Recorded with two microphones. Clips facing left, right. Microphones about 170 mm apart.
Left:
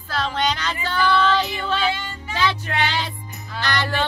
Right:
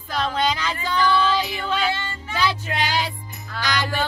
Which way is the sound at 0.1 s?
10° right (ahead or behind).